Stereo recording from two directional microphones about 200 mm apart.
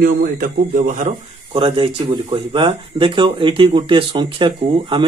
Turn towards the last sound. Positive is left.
turn(degrees=-25)  # may be behind; listen again after turning